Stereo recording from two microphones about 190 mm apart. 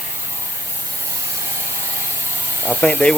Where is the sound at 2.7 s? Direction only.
5° left (ahead or behind).